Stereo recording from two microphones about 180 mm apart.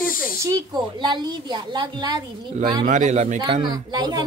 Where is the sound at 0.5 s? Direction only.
25° right (ahead or behind).